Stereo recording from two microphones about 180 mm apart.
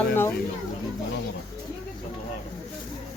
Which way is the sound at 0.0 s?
10° left (ahead or behind).